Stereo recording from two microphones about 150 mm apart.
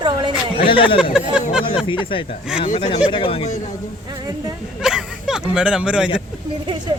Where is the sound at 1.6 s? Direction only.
35° left (ahead or behind).